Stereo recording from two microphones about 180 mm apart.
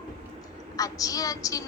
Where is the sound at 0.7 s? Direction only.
20° left (ahead or behind).